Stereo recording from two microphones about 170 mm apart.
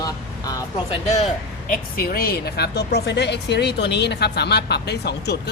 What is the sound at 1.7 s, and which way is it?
Speech, 60° left (ahead or behind).